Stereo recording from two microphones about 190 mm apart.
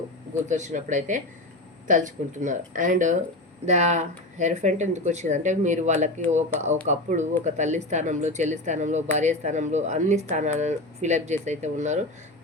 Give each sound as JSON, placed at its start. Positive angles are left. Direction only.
{"t": 0.4, "sound": "speech", "side_deg": -40}